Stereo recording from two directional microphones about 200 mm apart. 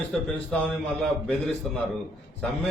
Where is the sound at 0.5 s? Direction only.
Centre (ahead or behind).